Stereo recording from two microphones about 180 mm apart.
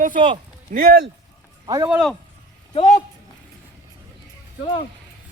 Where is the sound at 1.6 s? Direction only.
20° right (ahead or behind).